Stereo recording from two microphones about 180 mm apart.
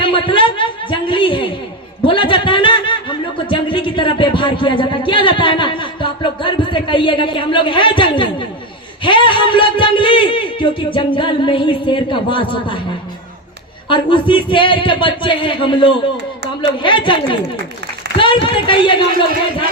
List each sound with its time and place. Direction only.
0.0 s a sound: 30° left (ahead or behind)
9.0 s a man's voice: 25° left (ahead or behind)
13.8 s a man's voice: 25° left (ahead or behind)
18.4 s a man's voice: 30° left (ahead or behind)